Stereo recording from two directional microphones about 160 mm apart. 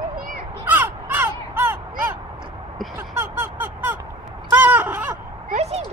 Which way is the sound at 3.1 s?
15° right (ahead or behind).